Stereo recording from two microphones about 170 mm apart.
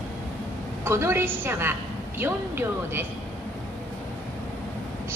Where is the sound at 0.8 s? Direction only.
15° right (ahead or behind).